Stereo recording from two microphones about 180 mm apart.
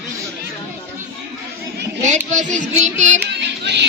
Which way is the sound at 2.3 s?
40° right (ahead or behind).